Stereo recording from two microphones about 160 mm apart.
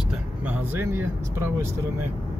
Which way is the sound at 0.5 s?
15° right (ahead or behind).